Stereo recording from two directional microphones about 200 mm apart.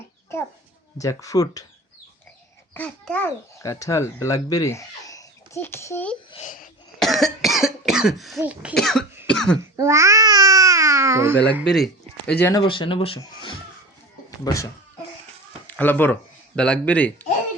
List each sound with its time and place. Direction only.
0.3 s dog: 10° left (ahead or behind)
0.9 s a child's voice: 15° left (ahead or behind)
2.7 s a child's voice: 5° left (ahead or behind)
6.3 s a child's voice: 40° left (ahead or behind)
7.0 s cough: centre (ahead or behind)
9.7 s babbling: 15° right (ahead or behind)
11.7 s speech: centre (ahead or behind)
12.4 s a child's voice: 20° left (ahead or behind)